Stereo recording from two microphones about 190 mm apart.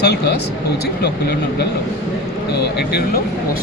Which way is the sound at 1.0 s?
60° left (ahead or behind).